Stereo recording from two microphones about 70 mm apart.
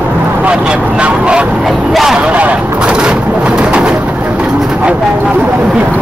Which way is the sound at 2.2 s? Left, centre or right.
Centre.